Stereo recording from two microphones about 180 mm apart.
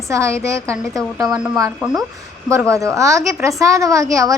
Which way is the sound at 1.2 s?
5° right (ahead or behind).